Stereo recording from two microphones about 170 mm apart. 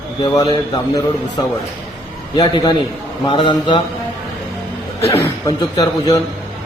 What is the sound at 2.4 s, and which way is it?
A man's voice, 25° left (ahead or behind).